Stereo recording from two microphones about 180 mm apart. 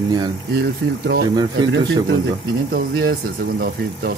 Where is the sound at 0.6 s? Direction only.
55° right (ahead or behind).